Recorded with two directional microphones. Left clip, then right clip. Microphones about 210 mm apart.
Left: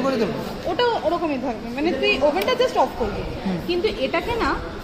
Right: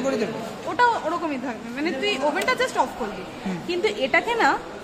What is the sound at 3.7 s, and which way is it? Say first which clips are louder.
Speech: left 1 dB; 90° right.